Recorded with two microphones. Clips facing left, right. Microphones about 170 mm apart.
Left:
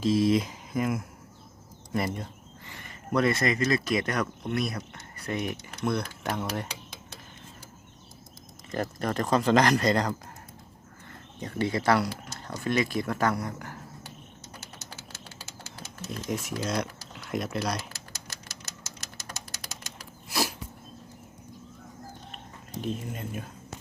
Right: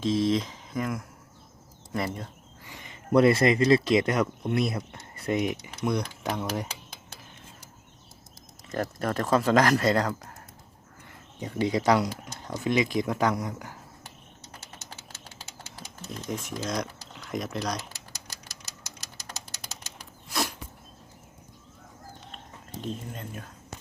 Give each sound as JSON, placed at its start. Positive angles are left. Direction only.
{"t": 0.0, "sound": "speech", "side_deg": 5}
{"t": 2.6, "sound": "a sound", "side_deg": -15}
{"t": 3.1, "sound": "speech", "side_deg": -30}
{"t": 8.7, "sound": "speech", "side_deg": 0}
{"t": 11.3, "sound": "speech", "side_deg": -15}
{"t": 16.0, "sound": "speech", "side_deg": 5}
{"t": 20.3, "sound": "sneeze", "side_deg": 5}
{"t": 22.8, "sound": "speech", "side_deg": 5}